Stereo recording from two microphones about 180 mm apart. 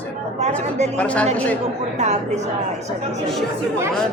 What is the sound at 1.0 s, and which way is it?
Speech, 5° left (ahead or behind).